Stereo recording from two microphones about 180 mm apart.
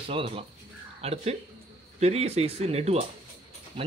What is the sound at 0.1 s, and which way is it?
A man's voice, 30° right (ahead or behind).